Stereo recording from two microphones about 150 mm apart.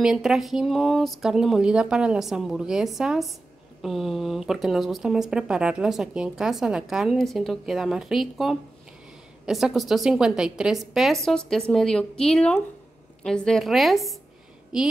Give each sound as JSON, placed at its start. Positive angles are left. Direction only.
{"t": 0.0, "sound": "speech", "side_deg": -5}